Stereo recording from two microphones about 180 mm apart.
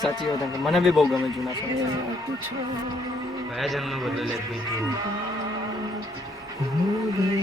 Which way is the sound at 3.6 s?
Centre (ahead or behind).